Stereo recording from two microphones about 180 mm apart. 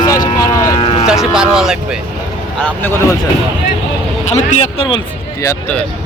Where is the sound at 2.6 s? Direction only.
10° left (ahead or behind).